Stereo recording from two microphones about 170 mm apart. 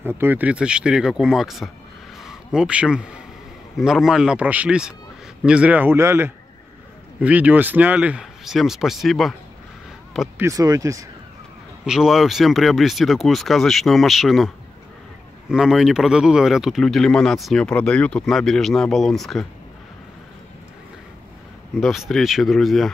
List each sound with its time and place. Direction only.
0.0 s speech: 15° right (ahead or behind)
10.3 s speech: 20° right (ahead or behind)
11.8 s speech: 5° right (ahead or behind)
21.7 s speech: centre (ahead or behind)